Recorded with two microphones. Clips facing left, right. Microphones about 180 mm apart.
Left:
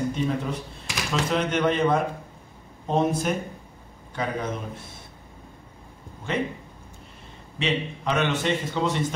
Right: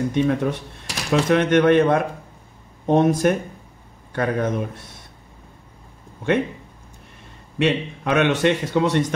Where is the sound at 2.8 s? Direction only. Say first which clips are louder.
Right 7 dB; 65° right (ahead or behind).